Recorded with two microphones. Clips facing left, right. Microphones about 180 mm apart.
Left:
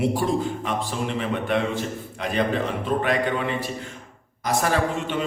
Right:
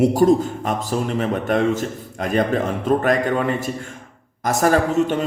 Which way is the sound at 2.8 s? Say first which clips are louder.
Right 6 dB; 45° right (ahead or behind).